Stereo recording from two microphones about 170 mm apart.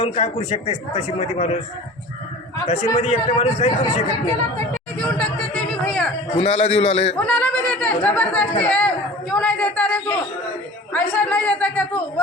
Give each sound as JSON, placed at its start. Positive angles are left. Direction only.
{"t": 0.0, "sound": "a man's voice", "side_deg": 40}
{"t": 2.6, "sound": "a man's voice", "side_deg": 40}
{"t": 4.9, "sound": "chatter", "side_deg": 5}
{"t": 6.3, "sound": "a man's voice", "side_deg": 35}
{"t": 7.3, "sound": "a woman's voice", "side_deg": 10}